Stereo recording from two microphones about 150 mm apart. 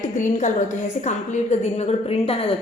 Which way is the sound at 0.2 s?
55° left (ahead or behind).